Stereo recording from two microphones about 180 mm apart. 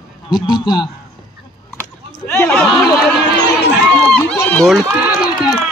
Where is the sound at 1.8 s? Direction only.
10° left (ahead or behind).